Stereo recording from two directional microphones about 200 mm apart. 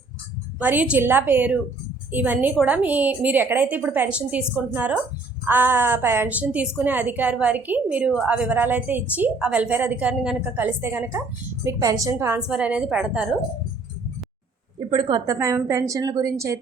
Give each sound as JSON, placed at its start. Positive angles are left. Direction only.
{"t": 0.6, "sound": "a woman's voice", "side_deg": -10}
{"t": 14.8, "sound": "a woman's voice", "side_deg": -25}